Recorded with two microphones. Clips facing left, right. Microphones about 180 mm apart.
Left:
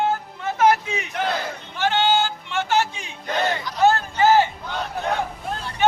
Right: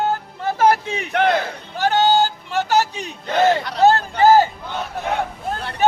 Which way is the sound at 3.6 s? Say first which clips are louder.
Right 3 dB; 65° right (ahead or behind).